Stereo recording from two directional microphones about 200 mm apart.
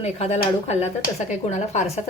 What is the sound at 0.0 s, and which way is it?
A woman's voice, 30° left (ahead or behind).